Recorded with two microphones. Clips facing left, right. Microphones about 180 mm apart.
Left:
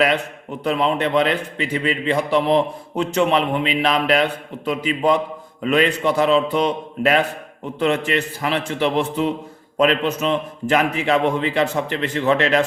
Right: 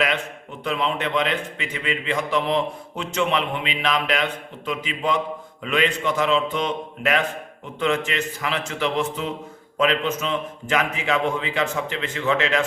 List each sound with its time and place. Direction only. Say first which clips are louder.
0.6 s a man's voice: left 5 dB; 40° left (ahead or behind)
8.8 s speech: left 5 dB; 55° left (ahead or behind)
9.7 s a man's voice: left 4 dB; 40° left (ahead or behind)